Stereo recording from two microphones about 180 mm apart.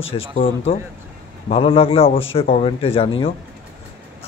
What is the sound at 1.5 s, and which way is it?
A man's voice, 30° left (ahead or behind).